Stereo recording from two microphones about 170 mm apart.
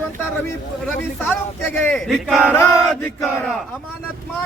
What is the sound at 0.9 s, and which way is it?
A man's voice, 10° left (ahead or behind).